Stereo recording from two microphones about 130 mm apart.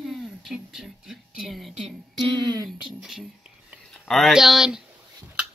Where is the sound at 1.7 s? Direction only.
40° right (ahead or behind).